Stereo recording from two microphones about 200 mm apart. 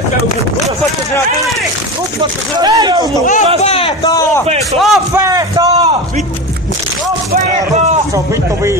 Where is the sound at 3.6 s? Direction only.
30° left (ahead or behind).